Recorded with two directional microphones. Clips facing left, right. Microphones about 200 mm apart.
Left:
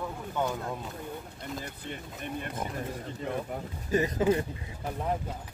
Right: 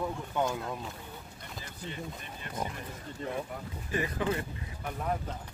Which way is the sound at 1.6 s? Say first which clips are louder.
Even; 55° left (ahead or behind).